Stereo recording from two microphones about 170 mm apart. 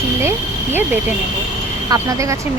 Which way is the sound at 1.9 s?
20° right (ahead or behind).